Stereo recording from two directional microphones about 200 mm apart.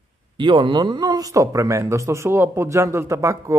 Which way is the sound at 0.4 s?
25° right (ahead or behind).